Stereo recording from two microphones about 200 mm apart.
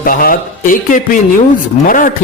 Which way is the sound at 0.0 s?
45° left (ahead or behind).